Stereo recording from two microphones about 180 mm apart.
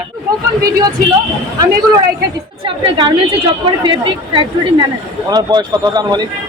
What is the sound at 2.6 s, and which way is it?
Speech, 30° right (ahead or behind).